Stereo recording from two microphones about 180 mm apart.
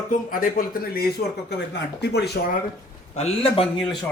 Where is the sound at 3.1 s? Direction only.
35° left (ahead or behind).